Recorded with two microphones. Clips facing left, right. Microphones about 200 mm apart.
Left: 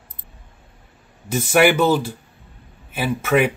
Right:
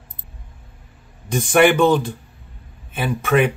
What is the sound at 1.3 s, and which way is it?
Speech, 5° left (ahead or behind).